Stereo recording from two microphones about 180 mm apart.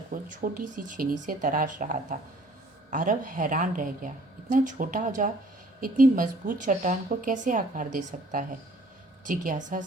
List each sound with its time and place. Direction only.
0.1 s a woman's voice: 50° right (ahead or behind)